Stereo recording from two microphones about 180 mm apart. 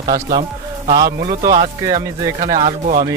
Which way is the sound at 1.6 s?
25° right (ahead or behind).